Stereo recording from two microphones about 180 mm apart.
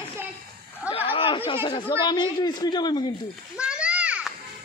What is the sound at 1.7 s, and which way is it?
Speech, 25° left (ahead or behind).